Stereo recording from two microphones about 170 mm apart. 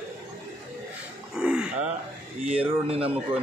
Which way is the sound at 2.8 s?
35° right (ahead or behind).